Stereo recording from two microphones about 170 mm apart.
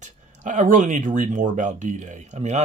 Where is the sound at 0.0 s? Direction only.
45° right (ahead or behind).